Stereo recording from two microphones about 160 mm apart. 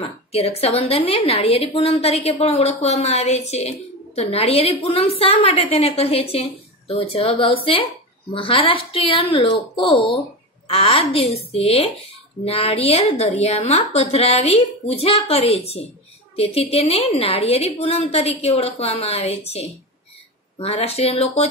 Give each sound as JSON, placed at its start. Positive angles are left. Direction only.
{"t": 0.0, "sound": "a woman's voice", "side_deg": 40}